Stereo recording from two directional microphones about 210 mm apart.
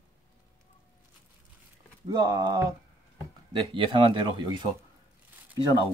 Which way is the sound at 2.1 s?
20° right (ahead or behind).